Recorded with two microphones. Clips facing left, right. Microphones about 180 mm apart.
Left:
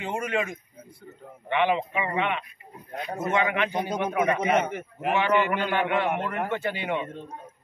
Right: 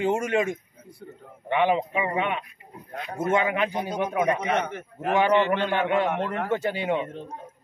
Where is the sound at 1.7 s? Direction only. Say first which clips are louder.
Right 2 dB; 40° right (ahead or behind).